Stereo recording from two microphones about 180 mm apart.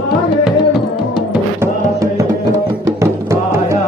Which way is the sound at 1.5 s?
15° right (ahead or behind).